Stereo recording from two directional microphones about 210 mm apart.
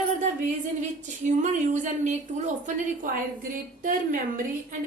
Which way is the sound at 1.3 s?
35° right (ahead or behind).